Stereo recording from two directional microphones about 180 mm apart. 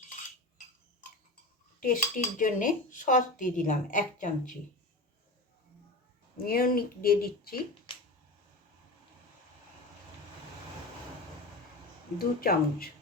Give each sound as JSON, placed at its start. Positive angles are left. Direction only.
{"t": 1.8, "sound": "cutlery", "side_deg": 50}
{"t": 6.3, "sound": "speech", "side_deg": 55}
{"t": 12.2, "sound": "speech", "side_deg": 55}